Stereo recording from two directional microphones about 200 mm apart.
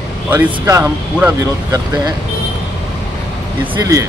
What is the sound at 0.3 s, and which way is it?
Speech, 10° right (ahead or behind).